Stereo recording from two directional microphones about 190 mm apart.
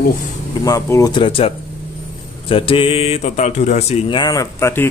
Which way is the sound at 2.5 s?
30° left (ahead or behind).